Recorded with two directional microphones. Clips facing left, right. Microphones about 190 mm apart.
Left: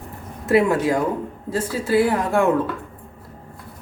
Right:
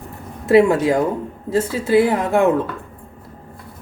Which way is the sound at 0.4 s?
25° right (ahead or behind).